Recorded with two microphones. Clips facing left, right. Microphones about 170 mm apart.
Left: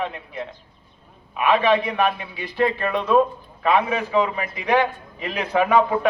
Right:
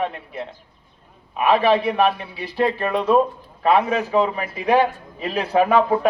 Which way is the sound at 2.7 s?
10° right (ahead or behind).